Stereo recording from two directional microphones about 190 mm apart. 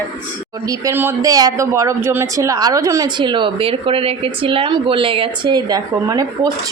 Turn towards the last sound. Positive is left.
turn(degrees=-20)  # may be behind; listen again after turning